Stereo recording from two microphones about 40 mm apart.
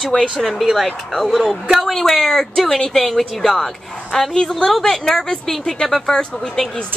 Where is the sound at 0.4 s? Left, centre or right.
Centre.